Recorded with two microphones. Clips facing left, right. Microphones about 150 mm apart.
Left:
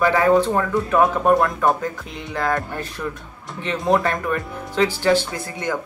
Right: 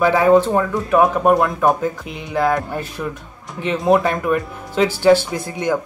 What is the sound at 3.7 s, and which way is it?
Speech, centre (ahead or behind).